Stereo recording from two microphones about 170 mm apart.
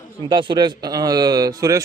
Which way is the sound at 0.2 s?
25° right (ahead or behind).